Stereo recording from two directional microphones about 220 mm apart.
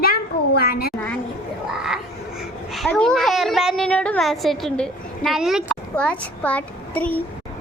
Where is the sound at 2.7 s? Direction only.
Centre (ahead or behind).